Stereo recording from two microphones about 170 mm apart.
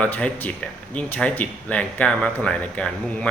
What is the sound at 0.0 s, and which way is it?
Speech, 10° left (ahead or behind).